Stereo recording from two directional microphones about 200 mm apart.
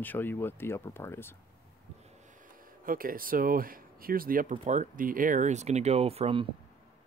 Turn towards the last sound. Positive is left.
turn(degrees=-30)  # may be behind; listen again after turning